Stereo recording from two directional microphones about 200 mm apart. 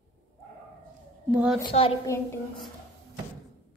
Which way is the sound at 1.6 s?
25° left (ahead or behind).